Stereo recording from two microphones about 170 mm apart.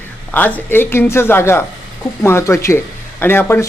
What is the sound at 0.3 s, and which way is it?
Speech, 10° left (ahead or behind).